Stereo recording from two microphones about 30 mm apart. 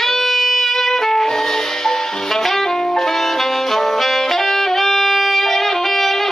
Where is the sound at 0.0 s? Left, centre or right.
Centre.